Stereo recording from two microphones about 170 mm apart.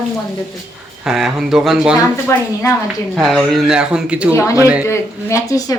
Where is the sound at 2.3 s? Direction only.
15° left (ahead or behind).